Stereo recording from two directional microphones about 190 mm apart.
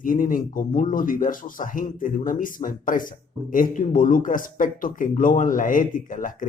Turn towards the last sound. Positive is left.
turn(degrees=45)  # may be behind; listen again after turning